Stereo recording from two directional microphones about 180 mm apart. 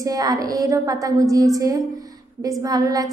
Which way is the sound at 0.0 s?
20° right (ahead or behind).